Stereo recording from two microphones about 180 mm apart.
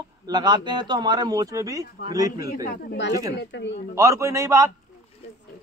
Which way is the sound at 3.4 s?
75° left (ahead or behind).